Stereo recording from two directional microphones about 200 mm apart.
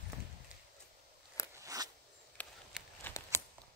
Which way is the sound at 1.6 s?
15° right (ahead or behind).